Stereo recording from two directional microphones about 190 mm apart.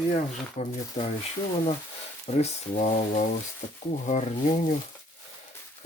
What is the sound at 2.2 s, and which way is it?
Speech, 35° left (ahead or behind).